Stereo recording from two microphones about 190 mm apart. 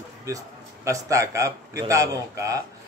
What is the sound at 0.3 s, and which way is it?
A man's voice, 15° right (ahead or behind).